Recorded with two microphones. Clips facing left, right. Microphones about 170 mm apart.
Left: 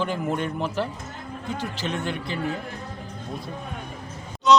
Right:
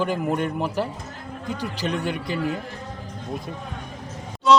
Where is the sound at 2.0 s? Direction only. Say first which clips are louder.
Right 2 dB; 10° right (ahead or behind).